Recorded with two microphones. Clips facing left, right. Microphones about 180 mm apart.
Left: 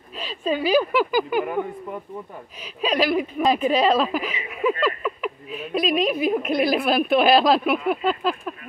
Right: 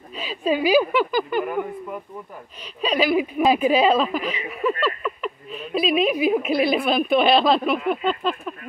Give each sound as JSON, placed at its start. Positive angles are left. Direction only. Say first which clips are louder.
{"t": 0.1, "sound": "a sound", "louder": "right 2 dB", "side_deg": -5}
{"t": 0.4, "sound": "speech", "louder": "right 2 dB", "side_deg": -10}
{"t": 0.9, "sound": "speech", "louder": "left 1 dB", "side_deg": 5}
{"t": 2.6, "sound": "speech", "louder": "even", "side_deg": 5}